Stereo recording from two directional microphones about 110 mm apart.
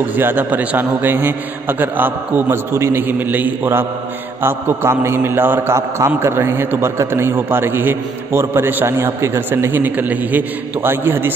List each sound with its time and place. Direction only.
0.0 s a man's voice: 15° right (ahead or behind)